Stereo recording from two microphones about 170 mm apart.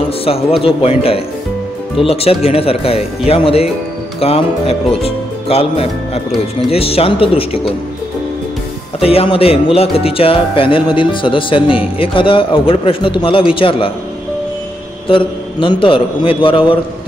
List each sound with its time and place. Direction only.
0.2 s speech: 35° left (ahead or behind)
9.0 s speech: 35° left (ahead or behind)
15.0 s speech: 30° left (ahead or behind)